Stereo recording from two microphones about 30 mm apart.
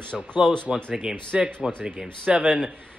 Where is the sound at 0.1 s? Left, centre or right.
Centre.